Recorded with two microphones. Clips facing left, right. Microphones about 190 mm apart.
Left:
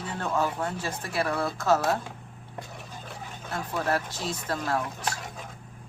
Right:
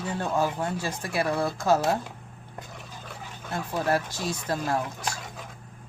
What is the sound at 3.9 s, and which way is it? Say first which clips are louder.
Speech: right 4 dB; 10° right (ahead or behind).